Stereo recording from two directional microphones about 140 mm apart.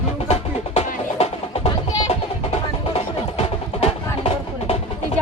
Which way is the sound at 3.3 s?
45° left (ahead or behind).